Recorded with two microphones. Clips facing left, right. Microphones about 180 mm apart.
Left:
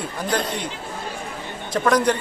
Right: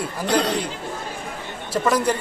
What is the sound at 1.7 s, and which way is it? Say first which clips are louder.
Speech: left 1 dB; 5° right (ahead or behind).